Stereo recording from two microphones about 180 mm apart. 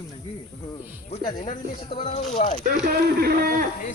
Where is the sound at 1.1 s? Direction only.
45° left (ahead or behind).